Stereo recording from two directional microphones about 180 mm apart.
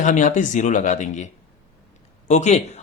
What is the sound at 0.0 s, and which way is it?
Speech, 45° left (ahead or behind).